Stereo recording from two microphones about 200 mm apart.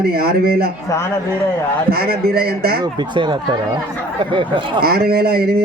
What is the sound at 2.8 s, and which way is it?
Speech, 25° right (ahead or behind).